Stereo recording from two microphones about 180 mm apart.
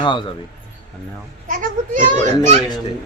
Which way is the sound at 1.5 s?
50° right (ahead or behind).